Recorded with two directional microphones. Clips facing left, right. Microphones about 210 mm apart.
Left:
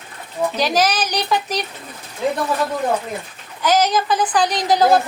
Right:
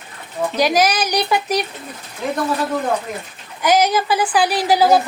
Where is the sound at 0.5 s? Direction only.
10° right (ahead or behind).